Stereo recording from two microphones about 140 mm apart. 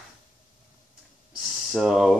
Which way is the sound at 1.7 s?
Centre (ahead or behind).